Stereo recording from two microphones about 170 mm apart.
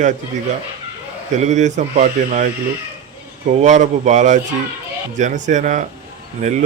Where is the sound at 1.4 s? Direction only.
45° right (ahead or behind).